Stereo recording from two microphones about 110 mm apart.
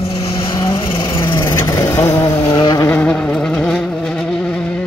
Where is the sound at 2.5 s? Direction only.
50° left (ahead or behind).